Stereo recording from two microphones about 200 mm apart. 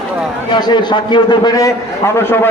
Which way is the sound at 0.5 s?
20° left (ahead or behind).